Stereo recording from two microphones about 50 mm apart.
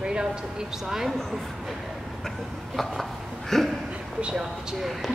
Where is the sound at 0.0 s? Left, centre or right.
Centre.